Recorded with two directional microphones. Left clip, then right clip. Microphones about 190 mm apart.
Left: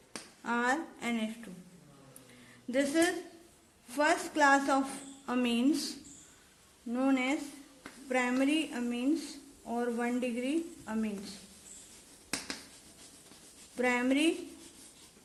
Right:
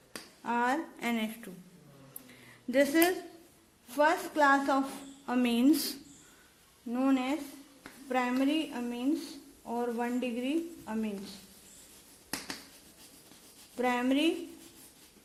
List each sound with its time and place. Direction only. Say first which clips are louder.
0.4 s a woman's voice: right 1 dB; 15° right (ahead or behind)
0.9 s a woman's voice: right 2 dB; 35° right (ahead or behind)
2.7 s a woman's voice: right 3 dB; 30° right (ahead or behind)
3.8 s a woman's voice: right 2 dB; 10° right (ahead or behind); by 6.0 s 40° right (ahead or behind)
6.9 s a woman's voice: even; 15° right (ahead or behind)
13.7 s a woman's voice: even; 10° right (ahead or behind)